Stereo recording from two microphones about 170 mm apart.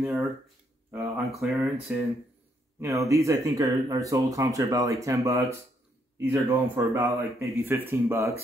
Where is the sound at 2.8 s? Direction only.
20° right (ahead or behind).